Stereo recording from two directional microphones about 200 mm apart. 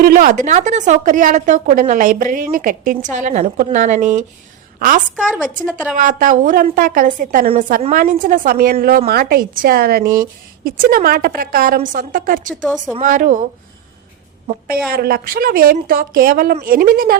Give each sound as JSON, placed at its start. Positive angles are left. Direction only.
{"t": 0.0, "sound": "a woman's voice", "side_deg": -45}
{"t": 5.1, "sound": "a woman's voice", "side_deg": -5}
{"t": 5.9, "sound": "a woman's voice", "side_deg": -40}
{"t": 14.8, "sound": "speech", "side_deg": -50}